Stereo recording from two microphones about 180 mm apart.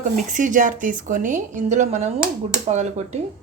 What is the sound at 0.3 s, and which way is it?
A woman's voice, 45° right (ahead or behind).